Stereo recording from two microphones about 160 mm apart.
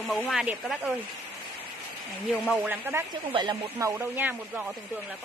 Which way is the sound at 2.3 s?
Centre (ahead or behind).